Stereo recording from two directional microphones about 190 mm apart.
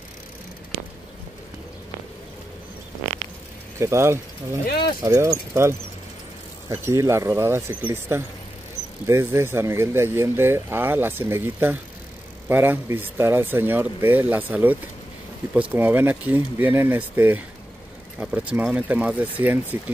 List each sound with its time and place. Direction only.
3.8 s speech: 15° right (ahead or behind)
4.6 s speech: 55° left (ahead or behind)
5.0 s speech: 15° right (ahead or behind)